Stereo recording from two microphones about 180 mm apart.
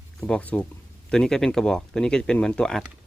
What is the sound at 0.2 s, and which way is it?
Speech, 5° left (ahead or behind).